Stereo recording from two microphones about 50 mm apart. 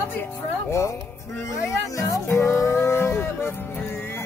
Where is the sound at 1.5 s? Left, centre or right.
Left.